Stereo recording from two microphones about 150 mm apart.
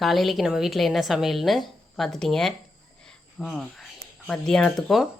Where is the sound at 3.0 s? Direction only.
Centre (ahead or behind).